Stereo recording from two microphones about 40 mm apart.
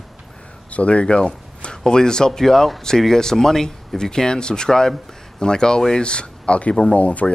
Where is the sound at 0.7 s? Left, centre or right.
Left.